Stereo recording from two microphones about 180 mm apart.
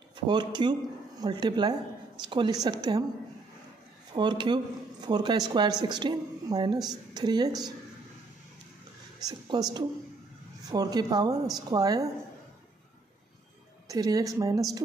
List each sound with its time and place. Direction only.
0.3 s speech: 25° right (ahead or behind)
4.1 s speech: 25° right (ahead or behind)
9.2 s speech: 20° right (ahead or behind)
13.8 s speech: 20° right (ahead or behind)